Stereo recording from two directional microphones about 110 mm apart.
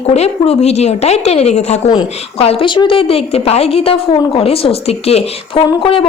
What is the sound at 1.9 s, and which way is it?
A woman's voice, 60° left (ahead or behind).